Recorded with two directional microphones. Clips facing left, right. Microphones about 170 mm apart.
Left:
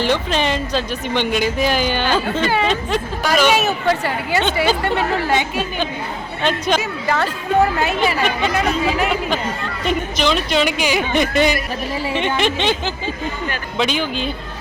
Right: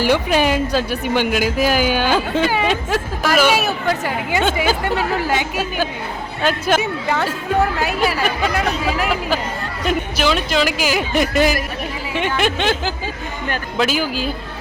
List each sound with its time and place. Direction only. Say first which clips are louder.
0.0 s a woman's voice: right 3 dB; 10° right (ahead or behind)
13.7 s speech: right 1 dB; 5° right (ahead or behind)